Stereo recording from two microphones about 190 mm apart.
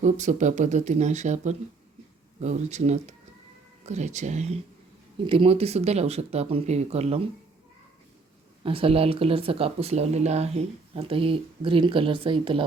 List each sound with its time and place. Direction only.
0.0 s speech: 40° right (ahead or behind)
8.6 s speech: 30° right (ahead or behind)